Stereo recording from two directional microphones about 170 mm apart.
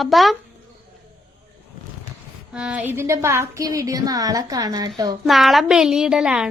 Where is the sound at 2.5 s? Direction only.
5° right (ahead or behind); by 5.1 s 25° right (ahead or behind).